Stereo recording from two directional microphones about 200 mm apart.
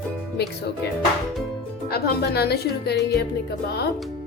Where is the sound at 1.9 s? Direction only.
50° left (ahead or behind).